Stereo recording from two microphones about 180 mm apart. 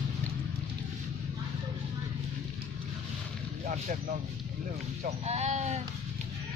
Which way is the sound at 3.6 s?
45° right (ahead or behind).